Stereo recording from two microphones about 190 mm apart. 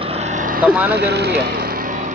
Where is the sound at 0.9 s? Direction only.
60° right (ahead or behind).